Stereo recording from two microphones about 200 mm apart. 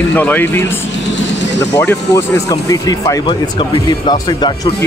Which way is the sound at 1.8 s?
10° left (ahead or behind).